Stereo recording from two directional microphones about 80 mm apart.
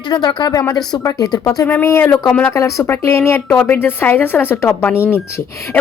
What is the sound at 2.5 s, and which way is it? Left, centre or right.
Speech, left.